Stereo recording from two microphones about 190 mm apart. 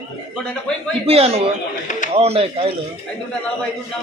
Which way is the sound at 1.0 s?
30° right (ahead or behind).